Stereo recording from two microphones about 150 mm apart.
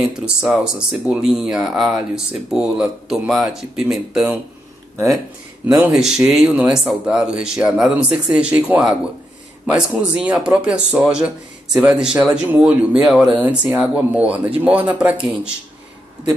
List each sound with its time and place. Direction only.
0.4 s speech: 5° right (ahead or behind)
4.9 s speech: 20° right (ahead or behind)
5.9 s speech: 5° right (ahead or behind)